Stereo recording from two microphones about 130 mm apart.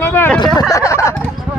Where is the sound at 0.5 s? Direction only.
25° left (ahead or behind).